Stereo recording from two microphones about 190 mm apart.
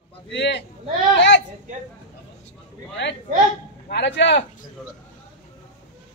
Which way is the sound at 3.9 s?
65° left (ahead or behind).